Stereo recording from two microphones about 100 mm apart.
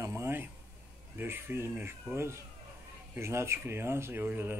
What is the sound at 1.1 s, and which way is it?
Speech, 20° right (ahead or behind).